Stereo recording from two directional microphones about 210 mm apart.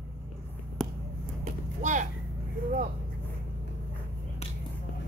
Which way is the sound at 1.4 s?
35° right (ahead or behind).